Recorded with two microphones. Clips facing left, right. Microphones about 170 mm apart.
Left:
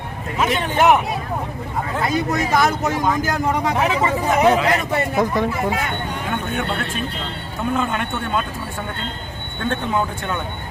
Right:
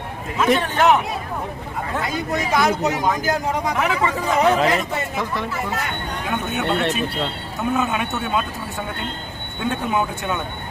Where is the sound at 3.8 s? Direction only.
25° left (ahead or behind).